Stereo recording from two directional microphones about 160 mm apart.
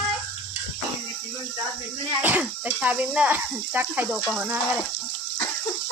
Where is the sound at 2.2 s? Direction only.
10° right (ahead or behind).